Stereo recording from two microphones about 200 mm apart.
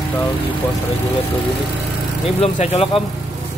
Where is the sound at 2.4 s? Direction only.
30° left (ahead or behind).